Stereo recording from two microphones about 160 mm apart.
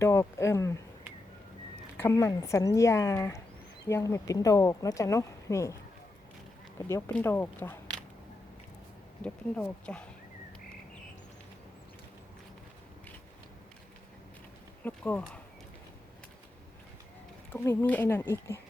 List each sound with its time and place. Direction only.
0.0 s speech: 15° left (ahead or behind)
2.0 s speech: 15° left (ahead or behind)
6.7 s speech: 15° left (ahead or behind)
9.2 s speech: 5° left (ahead or behind)
14.8 s speech: 10° left (ahead or behind)
17.5 s speech: 10° left (ahead or behind)